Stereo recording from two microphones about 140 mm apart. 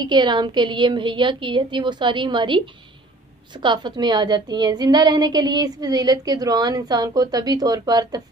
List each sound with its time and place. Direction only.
0.0 s a woman's voice: 30° right (ahead or behind)